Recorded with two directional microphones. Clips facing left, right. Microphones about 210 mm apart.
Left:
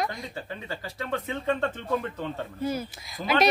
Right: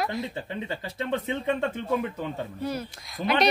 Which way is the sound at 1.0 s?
20° right (ahead or behind).